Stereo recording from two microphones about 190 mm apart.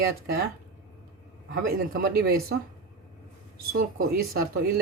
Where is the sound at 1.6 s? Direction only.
50° right (ahead or behind).